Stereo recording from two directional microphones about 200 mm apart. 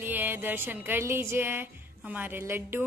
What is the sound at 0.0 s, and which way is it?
Speech, 10° right (ahead or behind).